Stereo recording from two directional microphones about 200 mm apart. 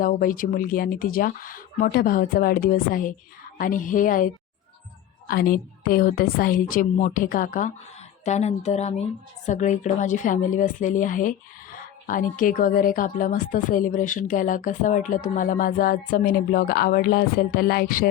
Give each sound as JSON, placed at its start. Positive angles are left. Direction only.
{"t": 0.0, "sound": "a woman's voice", "side_deg": 45}
{"t": 5.3, "sound": "a woman's voice", "side_deg": 50}